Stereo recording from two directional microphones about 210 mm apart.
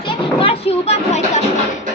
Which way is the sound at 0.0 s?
25° left (ahead or behind).